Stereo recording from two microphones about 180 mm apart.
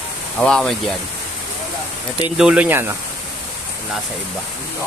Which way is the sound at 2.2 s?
5° right (ahead or behind).